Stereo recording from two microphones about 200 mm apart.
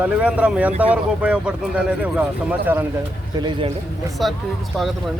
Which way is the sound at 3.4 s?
25° right (ahead or behind).